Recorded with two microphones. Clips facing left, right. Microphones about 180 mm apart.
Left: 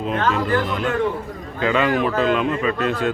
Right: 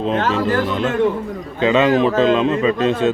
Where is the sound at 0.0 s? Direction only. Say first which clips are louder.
Right 3 dB; 25° right (ahead or behind).